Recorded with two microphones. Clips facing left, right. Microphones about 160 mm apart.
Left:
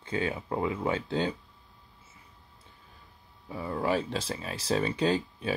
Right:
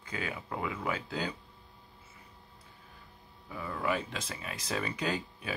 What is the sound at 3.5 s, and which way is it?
Speech, 30° left (ahead or behind).